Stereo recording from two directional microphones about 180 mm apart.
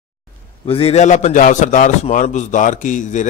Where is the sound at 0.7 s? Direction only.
30° left (ahead or behind).